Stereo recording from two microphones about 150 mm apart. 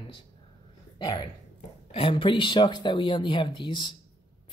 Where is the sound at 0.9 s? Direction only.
30° left (ahead or behind).